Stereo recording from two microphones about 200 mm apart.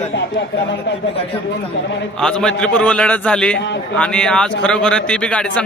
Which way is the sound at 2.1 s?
5° left (ahead or behind).